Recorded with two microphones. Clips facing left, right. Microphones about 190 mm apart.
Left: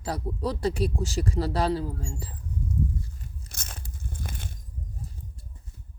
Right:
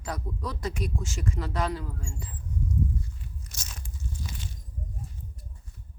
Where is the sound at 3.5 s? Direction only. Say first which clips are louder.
Left 1 dB; 55° left (ahead or behind).